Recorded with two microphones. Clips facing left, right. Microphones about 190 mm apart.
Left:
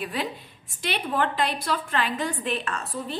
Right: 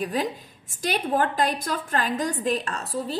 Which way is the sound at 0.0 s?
40° right (ahead or behind).